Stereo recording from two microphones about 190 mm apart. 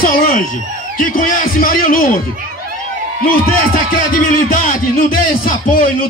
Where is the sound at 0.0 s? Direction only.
50° left (ahead or behind).